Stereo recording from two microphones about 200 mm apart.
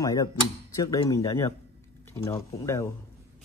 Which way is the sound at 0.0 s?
20° left (ahead or behind).